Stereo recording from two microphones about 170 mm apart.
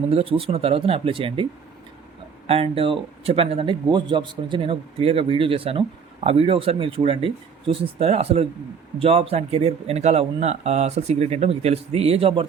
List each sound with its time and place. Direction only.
0.1 s speech: 35° right (ahead or behind)
2.5 s speech: 35° right (ahead or behind)